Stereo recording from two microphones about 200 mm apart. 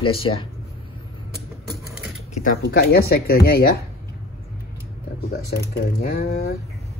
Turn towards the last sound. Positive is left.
turn(degrees=50)  # may be behind; listen again after turning